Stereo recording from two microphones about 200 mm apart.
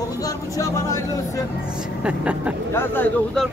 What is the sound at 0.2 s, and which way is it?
Speech, 15° left (ahead or behind).